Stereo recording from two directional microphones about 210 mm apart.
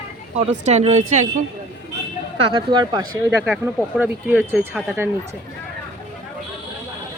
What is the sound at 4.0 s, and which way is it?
Speech, 10° right (ahead or behind).